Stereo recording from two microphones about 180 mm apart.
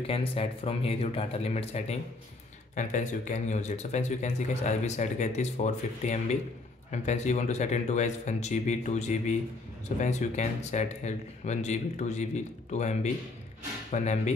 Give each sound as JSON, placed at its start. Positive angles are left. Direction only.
{"t": 0.0, "sound": "speech", "side_deg": 30}